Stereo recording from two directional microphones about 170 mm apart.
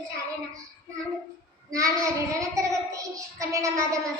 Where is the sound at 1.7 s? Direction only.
20° right (ahead or behind).